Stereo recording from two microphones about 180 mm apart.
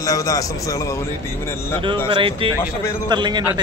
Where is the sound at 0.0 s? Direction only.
20° left (ahead or behind).